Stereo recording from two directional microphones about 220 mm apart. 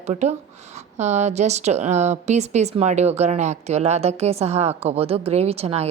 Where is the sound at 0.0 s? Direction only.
30° right (ahead or behind).